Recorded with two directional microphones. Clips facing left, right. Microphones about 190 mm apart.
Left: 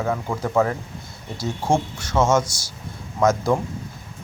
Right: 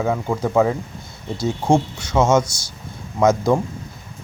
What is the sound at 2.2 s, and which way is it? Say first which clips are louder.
Speech: right 3 dB; 15° right (ahead or behind).